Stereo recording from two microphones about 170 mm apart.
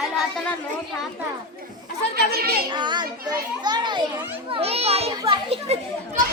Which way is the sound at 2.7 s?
25° right (ahead or behind).